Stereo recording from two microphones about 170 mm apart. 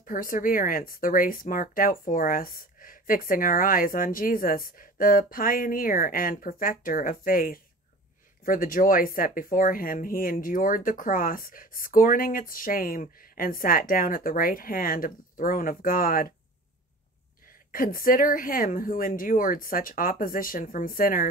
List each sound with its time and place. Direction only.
0.0 s speech: 55° left (ahead or behind)
17.6 s speech: 55° left (ahead or behind)